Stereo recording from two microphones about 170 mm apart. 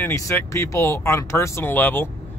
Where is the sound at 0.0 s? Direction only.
15° left (ahead or behind).